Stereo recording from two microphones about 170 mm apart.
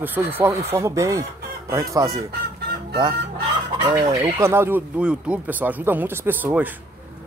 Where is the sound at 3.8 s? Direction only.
25° right (ahead or behind).